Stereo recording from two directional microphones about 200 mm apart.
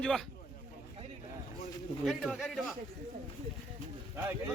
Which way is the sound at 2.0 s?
Centre (ahead or behind).